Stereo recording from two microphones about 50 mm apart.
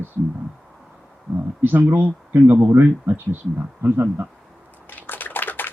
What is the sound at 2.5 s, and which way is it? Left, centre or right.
Speech, right.